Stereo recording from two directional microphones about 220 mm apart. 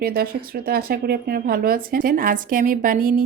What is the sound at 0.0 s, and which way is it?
Speech, 45° right (ahead or behind).